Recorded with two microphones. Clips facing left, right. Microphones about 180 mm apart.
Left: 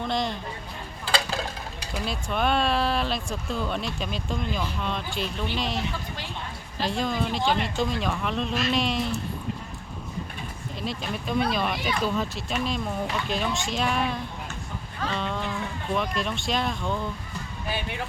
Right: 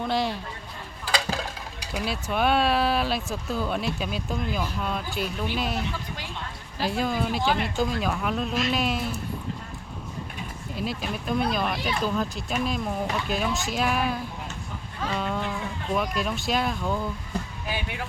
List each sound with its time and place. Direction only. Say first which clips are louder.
0.0 s speech: right 1 dB; 5° right (ahead or behind)
1.9 s speech: right 2 dB; 5° right (ahead or behind)
10.8 s speech: right 1 dB; 5° right (ahead or behind)